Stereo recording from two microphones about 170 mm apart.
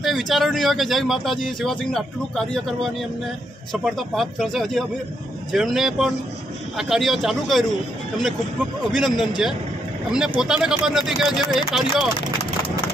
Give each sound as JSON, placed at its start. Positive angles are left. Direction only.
{"t": 0.0, "sound": "speech", "side_deg": 0}
{"t": 8.9, "sound": "speech", "side_deg": 0}